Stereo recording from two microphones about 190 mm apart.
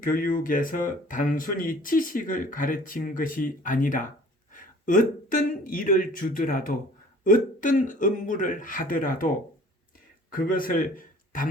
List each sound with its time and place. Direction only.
0.0 s speech: 45° left (ahead or behind)
10.3 s a man's voice: 45° left (ahead or behind)